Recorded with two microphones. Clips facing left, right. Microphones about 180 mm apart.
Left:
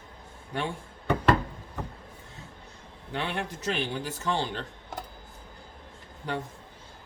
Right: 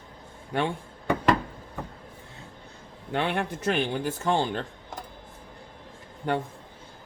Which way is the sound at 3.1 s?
55° right (ahead or behind).